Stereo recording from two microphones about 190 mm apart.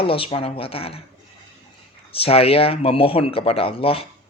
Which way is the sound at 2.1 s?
30° left (ahead or behind).